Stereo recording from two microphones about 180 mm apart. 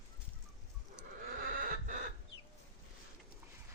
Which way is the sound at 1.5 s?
50° right (ahead or behind).